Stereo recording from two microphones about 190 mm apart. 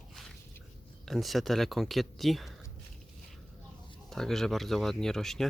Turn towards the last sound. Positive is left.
turn(degrees=0)  # may be behind; listen again after turning